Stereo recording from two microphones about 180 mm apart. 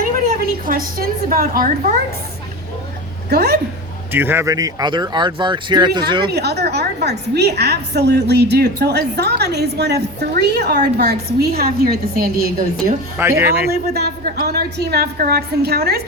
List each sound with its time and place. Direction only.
0.0 s a woman's voice: 50° right (ahead or behind)
3.2 s a woman's voice: 65° right (ahead or behind)
4.1 s speech: 10° right (ahead or behind)
6.3 s a woman's voice: 65° right (ahead or behind)
13.1 s speech: 15° right (ahead or behind)
13.7 s a woman's voice: 60° right (ahead or behind)